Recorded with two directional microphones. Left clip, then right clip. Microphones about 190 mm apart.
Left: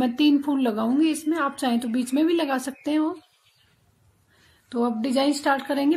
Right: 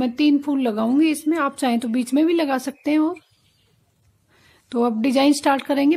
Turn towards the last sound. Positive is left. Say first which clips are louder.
# right 4 dB
turn(degrees=-25)  # may be behind; listen again after turning